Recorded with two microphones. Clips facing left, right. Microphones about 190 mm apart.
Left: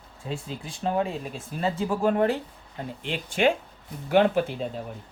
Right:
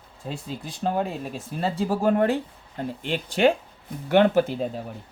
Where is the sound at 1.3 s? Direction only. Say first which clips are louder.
Right 2 dB; 40° right (ahead or behind).